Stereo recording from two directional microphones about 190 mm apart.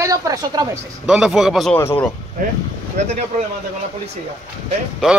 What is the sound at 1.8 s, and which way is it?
Speech, 15° left (ahead or behind).